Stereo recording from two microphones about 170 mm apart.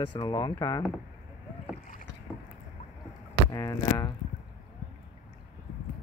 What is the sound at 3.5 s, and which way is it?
Speech, 20° left (ahead or behind).